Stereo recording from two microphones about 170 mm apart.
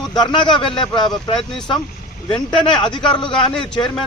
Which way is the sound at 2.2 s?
30° left (ahead or behind).